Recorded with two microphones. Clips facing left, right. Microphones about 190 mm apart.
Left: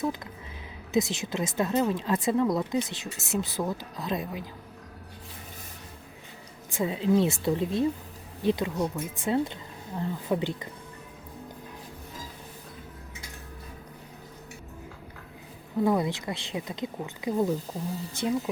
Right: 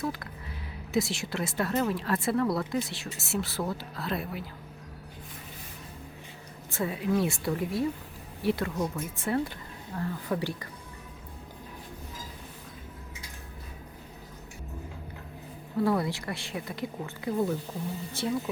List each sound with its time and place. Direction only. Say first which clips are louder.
0.0 s speech: left 3 dB; 20° left (ahead or behind)
6.7 s speech: left 4 dB; 20° left (ahead or behind)
15.8 s speech: left 2 dB; 20° left (ahead or behind)